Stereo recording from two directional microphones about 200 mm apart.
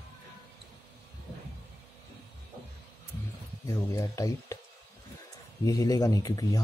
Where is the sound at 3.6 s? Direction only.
15° left (ahead or behind).